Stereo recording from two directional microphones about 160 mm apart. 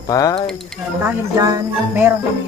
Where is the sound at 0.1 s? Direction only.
20° left (ahead or behind).